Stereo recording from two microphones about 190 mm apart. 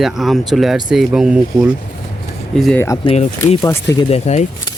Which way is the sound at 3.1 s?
35° left (ahead or behind).